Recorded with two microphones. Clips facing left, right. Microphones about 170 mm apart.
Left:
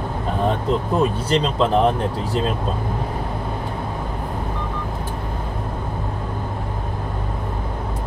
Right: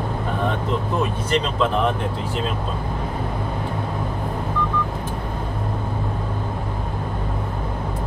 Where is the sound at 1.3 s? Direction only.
35° left (ahead or behind).